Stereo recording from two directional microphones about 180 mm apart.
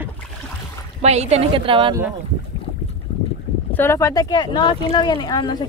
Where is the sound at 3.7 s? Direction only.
15° left (ahead or behind).